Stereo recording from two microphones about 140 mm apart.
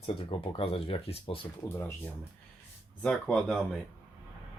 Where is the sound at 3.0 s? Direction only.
5° left (ahead or behind).